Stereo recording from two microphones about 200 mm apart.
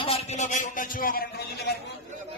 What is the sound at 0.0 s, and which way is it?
A man's voice, 30° left (ahead or behind).